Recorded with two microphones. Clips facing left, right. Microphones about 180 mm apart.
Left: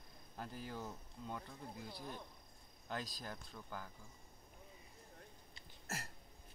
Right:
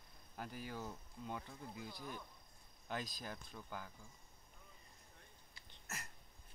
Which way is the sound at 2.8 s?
10° right (ahead or behind).